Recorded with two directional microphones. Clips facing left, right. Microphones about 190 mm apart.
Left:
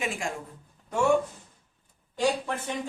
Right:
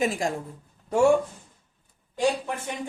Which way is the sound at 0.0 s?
40° right (ahead or behind).